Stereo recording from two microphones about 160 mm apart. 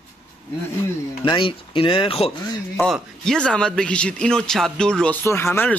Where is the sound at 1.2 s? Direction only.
30° left (ahead or behind).